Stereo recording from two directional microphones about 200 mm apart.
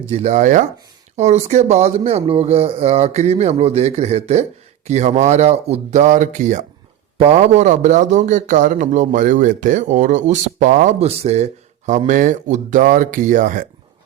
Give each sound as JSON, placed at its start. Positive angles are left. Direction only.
{"t": 0.1, "sound": "a man's voice", "side_deg": -35}